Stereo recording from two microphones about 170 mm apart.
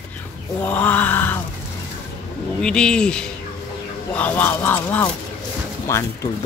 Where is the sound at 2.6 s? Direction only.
5° left (ahead or behind).